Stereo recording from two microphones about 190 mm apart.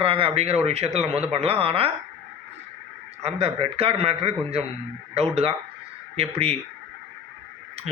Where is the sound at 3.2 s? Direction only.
30° right (ahead or behind).